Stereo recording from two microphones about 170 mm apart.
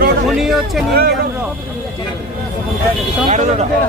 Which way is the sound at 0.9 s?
65° right (ahead or behind).